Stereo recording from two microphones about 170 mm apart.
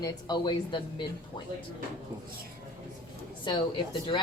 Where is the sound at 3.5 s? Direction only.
25° left (ahead or behind).